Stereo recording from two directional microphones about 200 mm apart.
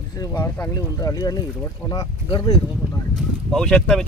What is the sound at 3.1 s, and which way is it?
Speech, centre (ahead or behind).